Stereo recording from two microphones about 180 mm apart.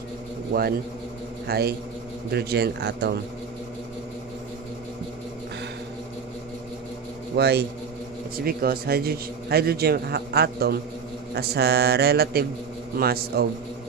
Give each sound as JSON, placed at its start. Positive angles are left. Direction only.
{"t": 0.5, "sound": "speech", "side_deg": -50}
{"t": 1.5, "sound": "a man's voice", "side_deg": -60}
{"t": 7.3, "sound": "a man's voice", "side_deg": -65}